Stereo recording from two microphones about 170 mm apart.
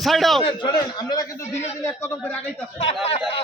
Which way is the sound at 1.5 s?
40° left (ahead or behind).